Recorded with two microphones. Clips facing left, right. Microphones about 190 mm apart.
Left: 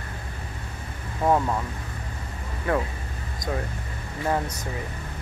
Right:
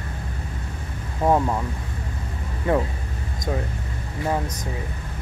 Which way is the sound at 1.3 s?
10° right (ahead or behind).